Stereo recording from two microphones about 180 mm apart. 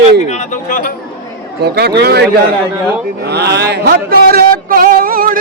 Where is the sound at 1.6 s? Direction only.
65° right (ahead or behind).